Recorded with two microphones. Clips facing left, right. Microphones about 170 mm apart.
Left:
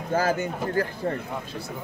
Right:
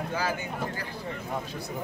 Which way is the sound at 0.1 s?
45° left (ahead or behind).